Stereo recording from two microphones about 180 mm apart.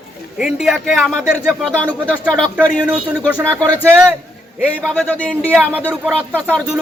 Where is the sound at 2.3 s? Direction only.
5° left (ahead or behind).